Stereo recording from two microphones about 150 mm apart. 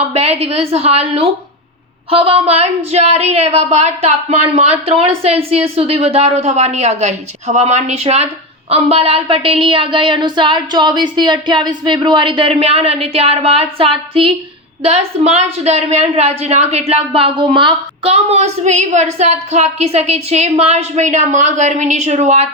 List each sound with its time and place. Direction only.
0.1 s a woman's voice: 40° right (ahead or behind)